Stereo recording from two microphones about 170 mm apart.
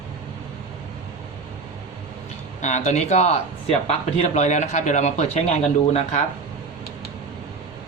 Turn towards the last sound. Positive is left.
turn(degrees=40)  # may be behind; listen again after turning